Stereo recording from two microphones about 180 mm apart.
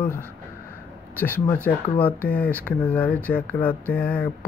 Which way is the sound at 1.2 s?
10° left (ahead or behind).